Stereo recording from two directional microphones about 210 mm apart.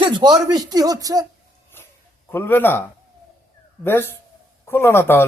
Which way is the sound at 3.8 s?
10° left (ahead or behind).